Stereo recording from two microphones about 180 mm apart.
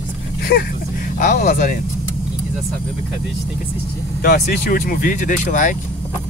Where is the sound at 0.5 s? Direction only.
65° left (ahead or behind).